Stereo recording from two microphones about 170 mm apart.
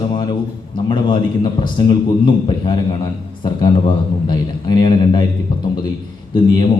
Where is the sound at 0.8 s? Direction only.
30° left (ahead or behind).